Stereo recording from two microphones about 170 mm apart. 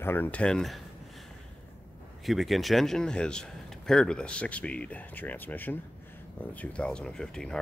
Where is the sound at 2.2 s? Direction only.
Centre (ahead or behind).